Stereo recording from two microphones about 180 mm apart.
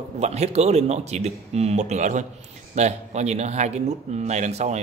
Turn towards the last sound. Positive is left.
turn(degrees=-40)  # may be behind; listen again after turning